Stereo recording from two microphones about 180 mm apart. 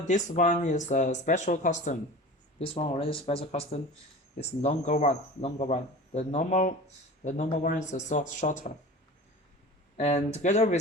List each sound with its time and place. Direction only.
0.1 s speech: 45° left (ahead or behind)
2.6 s speech: 30° left (ahead or behind)
10.0 s speech: 35° left (ahead or behind)